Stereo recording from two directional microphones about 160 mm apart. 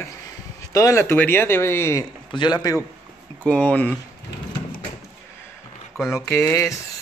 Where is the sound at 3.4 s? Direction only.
5° left (ahead or behind).